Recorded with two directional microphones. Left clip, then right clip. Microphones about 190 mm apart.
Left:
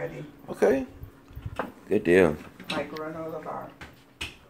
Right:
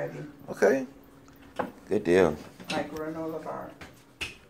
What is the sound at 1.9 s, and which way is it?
Speech, 25° left (ahead or behind).